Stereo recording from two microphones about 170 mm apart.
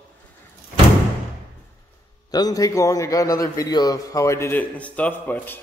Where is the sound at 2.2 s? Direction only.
25° left (ahead or behind).